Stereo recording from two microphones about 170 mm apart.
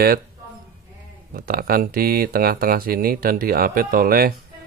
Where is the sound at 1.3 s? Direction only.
60° right (ahead or behind).